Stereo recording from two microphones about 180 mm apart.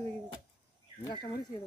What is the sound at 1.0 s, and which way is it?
Speech, 25° left (ahead or behind).